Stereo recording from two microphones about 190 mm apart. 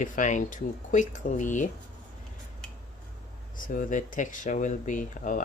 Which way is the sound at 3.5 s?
45° left (ahead or behind).